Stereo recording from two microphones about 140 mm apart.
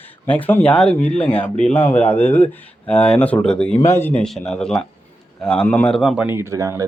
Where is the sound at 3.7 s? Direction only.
20° left (ahead or behind).